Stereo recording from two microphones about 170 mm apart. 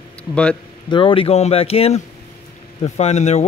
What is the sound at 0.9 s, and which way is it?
Speech, 30° left (ahead or behind).